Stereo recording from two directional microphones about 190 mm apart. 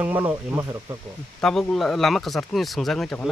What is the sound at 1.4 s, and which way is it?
Speech, 5° left (ahead or behind).